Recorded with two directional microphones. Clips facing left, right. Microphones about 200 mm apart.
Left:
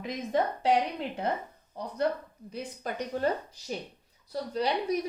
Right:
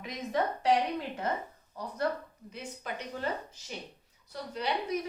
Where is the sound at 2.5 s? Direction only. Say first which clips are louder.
Left 4 dB; 40° left (ahead or behind).